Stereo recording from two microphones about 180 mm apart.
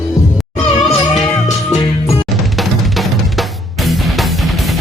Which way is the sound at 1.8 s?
25° left (ahead or behind).